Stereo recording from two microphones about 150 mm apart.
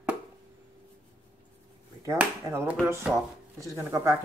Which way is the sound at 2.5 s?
15° right (ahead or behind).